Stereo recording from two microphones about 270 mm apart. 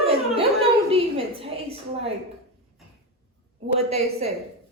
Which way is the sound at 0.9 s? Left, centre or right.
Right.